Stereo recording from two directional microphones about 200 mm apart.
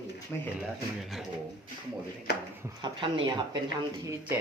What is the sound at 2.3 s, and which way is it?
Speech, 50° left (ahead or behind).